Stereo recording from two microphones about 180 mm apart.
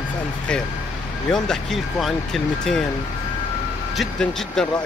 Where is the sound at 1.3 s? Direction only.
Centre (ahead or behind).